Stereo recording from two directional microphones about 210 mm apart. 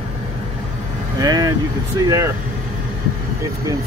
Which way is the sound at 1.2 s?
20° right (ahead or behind).